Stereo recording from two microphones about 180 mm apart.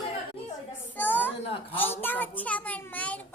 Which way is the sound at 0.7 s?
10° left (ahead or behind).